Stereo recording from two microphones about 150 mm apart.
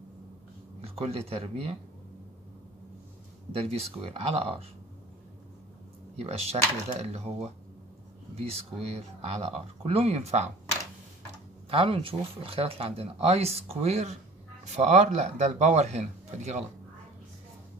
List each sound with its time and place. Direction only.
0.7 s speech: 40° right (ahead or behind)
3.5 s speech: 40° right (ahead or behind)
6.1 s speech: 45° right (ahead or behind)
8.4 s speech: 40° right (ahead or behind)
11.7 s speech: 35° right (ahead or behind)